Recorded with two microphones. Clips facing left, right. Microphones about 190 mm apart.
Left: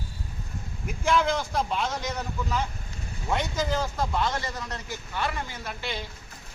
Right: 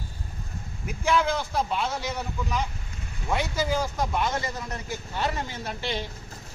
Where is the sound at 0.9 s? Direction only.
5° right (ahead or behind); by 6.0 s 25° right (ahead or behind).